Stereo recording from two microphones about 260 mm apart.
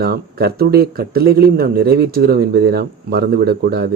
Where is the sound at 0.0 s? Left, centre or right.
Right.